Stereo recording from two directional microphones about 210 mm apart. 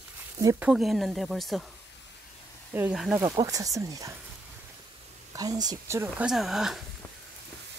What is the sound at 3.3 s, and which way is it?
Speech, 15° right (ahead or behind).